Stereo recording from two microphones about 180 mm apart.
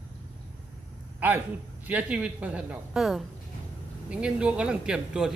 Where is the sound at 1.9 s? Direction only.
10° right (ahead or behind).